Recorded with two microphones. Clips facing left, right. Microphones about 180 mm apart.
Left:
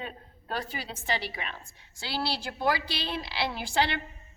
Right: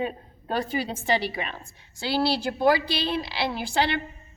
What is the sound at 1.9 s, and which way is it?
A woman's voice, 20° right (ahead or behind).